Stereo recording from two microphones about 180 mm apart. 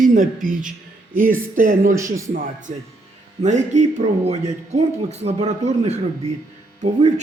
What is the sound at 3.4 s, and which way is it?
Speech, 40° right (ahead or behind).